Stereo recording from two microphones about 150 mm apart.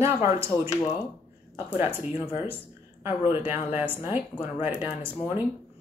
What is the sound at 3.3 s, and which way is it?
Speech, 15° right (ahead or behind).